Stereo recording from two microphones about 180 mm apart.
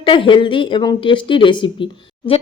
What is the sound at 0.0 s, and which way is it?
Speech, 30° left (ahead or behind).